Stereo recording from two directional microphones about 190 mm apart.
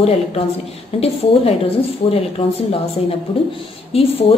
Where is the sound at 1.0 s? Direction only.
30° left (ahead or behind).